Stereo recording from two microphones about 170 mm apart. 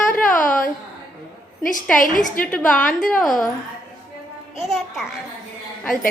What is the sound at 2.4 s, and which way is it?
Speech, 5° left (ahead or behind).